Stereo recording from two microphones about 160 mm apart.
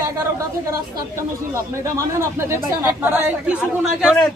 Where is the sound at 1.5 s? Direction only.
15° right (ahead or behind).